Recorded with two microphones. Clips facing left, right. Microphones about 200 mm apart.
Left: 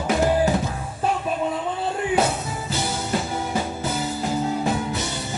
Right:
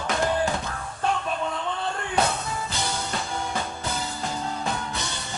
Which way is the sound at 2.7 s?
5° left (ahead or behind).